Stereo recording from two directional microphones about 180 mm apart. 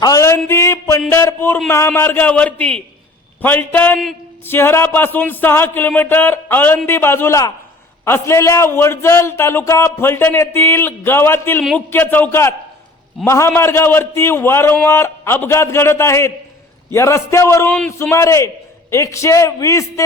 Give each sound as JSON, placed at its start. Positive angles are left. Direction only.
{"t": 0.0, "sound": "a man's voice", "side_deg": 20}
{"t": 17.7, "sound": "a man's voice", "side_deg": 5}
{"t": 17.9, "sound": "a man's voice", "side_deg": 15}